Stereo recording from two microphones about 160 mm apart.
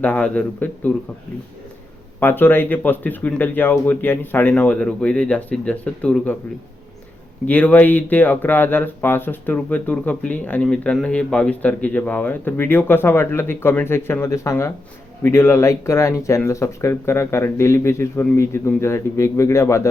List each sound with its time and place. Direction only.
0.0 s speech: 10° left (ahead or behind)
2.2 s speech: 10° left (ahead or behind)
7.4 s speech: 10° left (ahead or behind)